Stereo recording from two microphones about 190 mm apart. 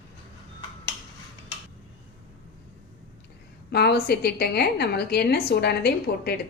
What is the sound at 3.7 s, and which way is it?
A woman's voice, 55° left (ahead or behind).